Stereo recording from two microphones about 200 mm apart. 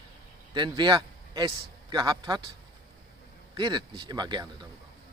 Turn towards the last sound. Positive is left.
turn(degrees=-20)  # may be behind; listen again after turning